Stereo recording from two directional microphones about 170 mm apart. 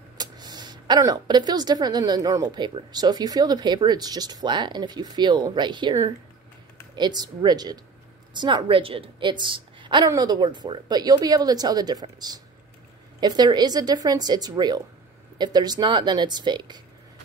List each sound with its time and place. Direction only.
0.2 s a woman's voice: 25° right (ahead or behind)